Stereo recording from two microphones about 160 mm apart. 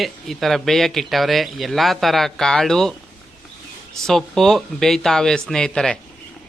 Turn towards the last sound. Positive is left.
turn(degrees=5)  # may be behind; listen again after turning